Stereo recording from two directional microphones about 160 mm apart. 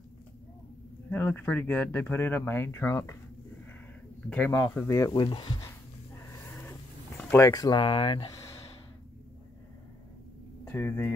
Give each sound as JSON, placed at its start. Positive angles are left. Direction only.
{"t": 1.1, "sound": "speech", "side_deg": 10}
{"t": 4.5, "sound": "speech", "side_deg": 20}
{"t": 5.1, "sound": "speech", "side_deg": 30}
{"t": 7.2, "sound": "speech", "side_deg": 10}
{"t": 7.8, "sound": "speech", "side_deg": 35}
{"t": 10.6, "sound": "speech", "side_deg": 15}